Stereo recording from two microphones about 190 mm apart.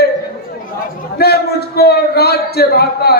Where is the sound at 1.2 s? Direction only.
55° left (ahead or behind).